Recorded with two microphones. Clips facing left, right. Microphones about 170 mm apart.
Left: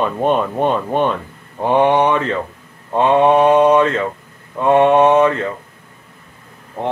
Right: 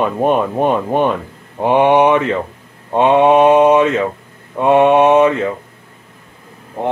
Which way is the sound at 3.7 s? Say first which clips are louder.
Right 2 dB; 10° right (ahead or behind).